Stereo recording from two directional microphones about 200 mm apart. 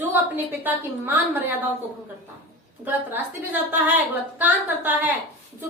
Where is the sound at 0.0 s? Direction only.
10° right (ahead or behind).